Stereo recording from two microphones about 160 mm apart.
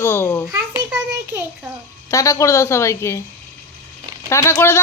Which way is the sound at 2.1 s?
20° left (ahead or behind).